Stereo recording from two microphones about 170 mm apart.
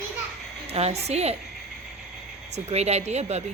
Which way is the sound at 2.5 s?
40° right (ahead or behind).